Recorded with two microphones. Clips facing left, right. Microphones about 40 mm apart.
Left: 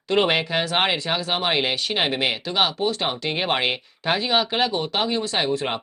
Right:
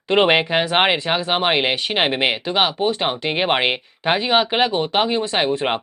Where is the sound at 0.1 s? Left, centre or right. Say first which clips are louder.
Right 5 dB; right.